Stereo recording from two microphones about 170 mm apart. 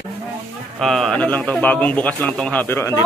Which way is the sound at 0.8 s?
Centre (ahead or behind).